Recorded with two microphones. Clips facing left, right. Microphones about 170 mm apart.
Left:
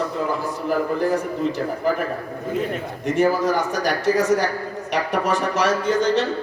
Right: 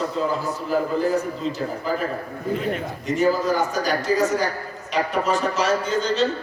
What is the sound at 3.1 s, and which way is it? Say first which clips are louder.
A man's voice: left 1 dB; 60° left (ahead or behind).